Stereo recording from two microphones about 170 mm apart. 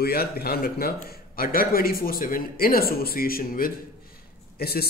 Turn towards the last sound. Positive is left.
turn(degrees=65)  # may be behind; listen again after turning